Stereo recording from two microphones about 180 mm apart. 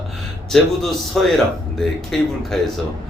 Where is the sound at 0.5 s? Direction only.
Centre (ahead or behind).